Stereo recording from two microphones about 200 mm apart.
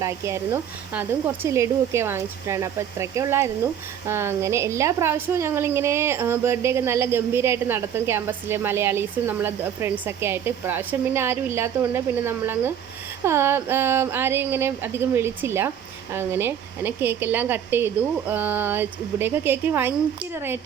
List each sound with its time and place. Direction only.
0.0 s a woman's voice: 15° right (ahead or behind)